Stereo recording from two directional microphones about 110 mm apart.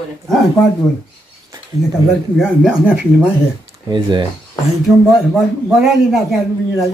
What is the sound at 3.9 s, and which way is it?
Speech, 40° right (ahead or behind).